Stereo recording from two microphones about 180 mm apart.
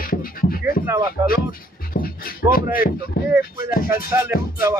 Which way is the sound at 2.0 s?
55° left (ahead or behind).